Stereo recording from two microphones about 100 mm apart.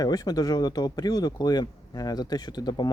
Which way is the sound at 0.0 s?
40° left (ahead or behind).